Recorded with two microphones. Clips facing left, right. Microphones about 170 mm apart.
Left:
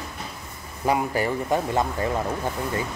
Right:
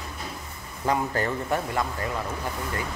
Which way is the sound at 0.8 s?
10° left (ahead or behind).